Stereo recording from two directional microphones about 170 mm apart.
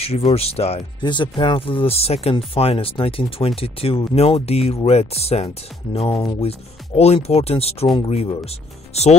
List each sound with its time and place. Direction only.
0.0 s speech: 35° left (ahead or behind)